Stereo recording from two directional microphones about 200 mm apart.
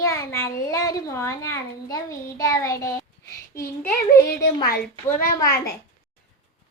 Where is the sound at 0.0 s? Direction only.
15° left (ahead or behind).